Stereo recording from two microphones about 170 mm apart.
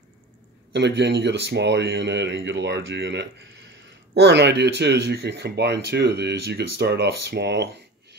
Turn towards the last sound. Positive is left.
turn(degrees=-90)